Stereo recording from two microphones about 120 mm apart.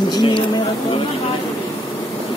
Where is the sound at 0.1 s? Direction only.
40° left (ahead or behind).